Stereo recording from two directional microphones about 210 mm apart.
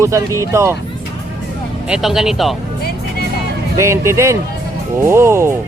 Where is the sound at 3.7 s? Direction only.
15° right (ahead or behind).